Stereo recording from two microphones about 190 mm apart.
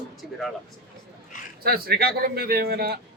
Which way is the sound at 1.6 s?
55° right (ahead or behind).